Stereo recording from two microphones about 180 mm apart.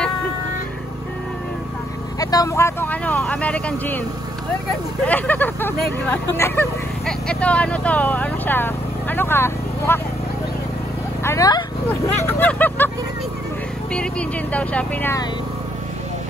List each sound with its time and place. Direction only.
2.1 s speech: 20° left (ahead or behind)
5.0 s speech: 10° left (ahead or behind)
11.2 s speech: 20° left (ahead or behind)
12.3 s speech: 10° left (ahead or behind)
14.5 s speech: 5° left (ahead or behind)